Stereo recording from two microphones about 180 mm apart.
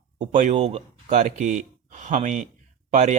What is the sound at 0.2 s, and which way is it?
Speech, 45° right (ahead or behind).